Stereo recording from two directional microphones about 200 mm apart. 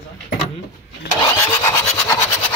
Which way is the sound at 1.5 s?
15° left (ahead or behind).